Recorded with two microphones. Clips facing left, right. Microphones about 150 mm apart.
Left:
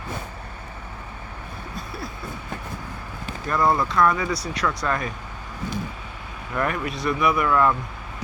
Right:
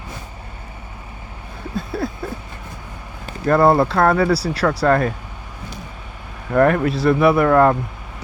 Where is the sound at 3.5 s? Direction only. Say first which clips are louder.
Right 8 dB; 65° right (ahead or behind).